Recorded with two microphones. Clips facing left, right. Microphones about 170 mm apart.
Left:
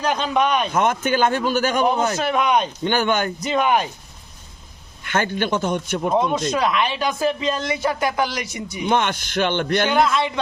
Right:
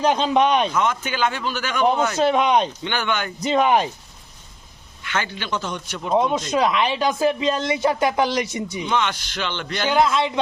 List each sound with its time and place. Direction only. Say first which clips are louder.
0.0 s a woman's voice: right 2 dB; 25° right (ahead or behind)
0.7 s a man's voice: left 3 dB; 50° left (ahead or behind)
2.1 s a woman's voice: right 2 dB; 25° right (ahead or behind)
2.8 s a man's voice: left 5 dB; 45° left (ahead or behind)
3.4 s a woman's voice: right 4 dB; 25° right (ahead or behind)
5.0 s a man's voice: left 5 dB; 50° left (ahead or behind)
6.5 s a woman's voice: right 1 dB; 20° right (ahead or behind)
8.9 s a man's voice: left 4 dB; 50° left (ahead or behind)
9.9 s a woman's voice: right 4 dB; 15° right (ahead or behind)